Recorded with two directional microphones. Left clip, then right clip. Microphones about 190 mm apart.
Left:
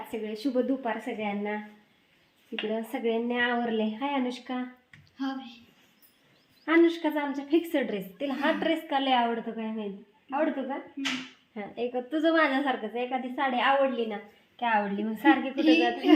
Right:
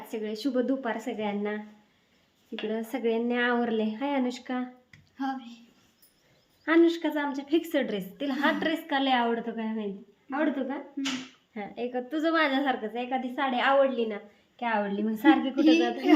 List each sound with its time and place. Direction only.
0.1 s a woman's voice: centre (ahead or behind)
2.6 s speech: centre (ahead or behind)
4.9 s a sound: 40° right (ahead or behind)
6.7 s a woman's voice: centre (ahead or behind)
15.5 s a woman's voice: 25° right (ahead or behind)